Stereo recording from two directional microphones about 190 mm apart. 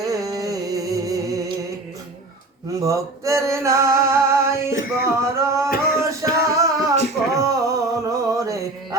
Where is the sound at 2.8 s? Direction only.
15° right (ahead or behind).